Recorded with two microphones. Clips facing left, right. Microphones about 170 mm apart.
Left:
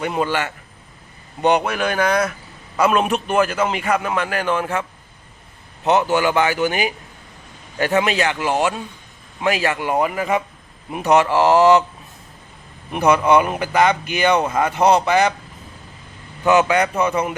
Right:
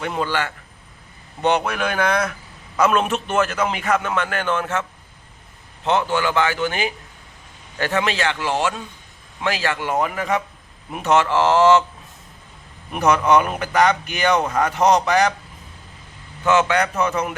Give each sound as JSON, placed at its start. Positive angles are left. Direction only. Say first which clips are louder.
{"t": 0.0, "sound": "speech", "louder": "left 2 dB", "side_deg": 15}
{"t": 13.0, "sound": "speech", "louder": "left 2 dB", "side_deg": 10}
{"t": 16.4, "sound": "speech", "louder": "left 2 dB", "side_deg": 15}